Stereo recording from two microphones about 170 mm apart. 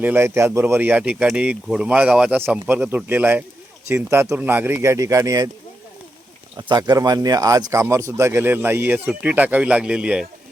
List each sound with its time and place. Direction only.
0.0 s speech: 15° right (ahead or behind)
6.6 s speech: 25° right (ahead or behind); by 10.2 s 5° right (ahead or behind)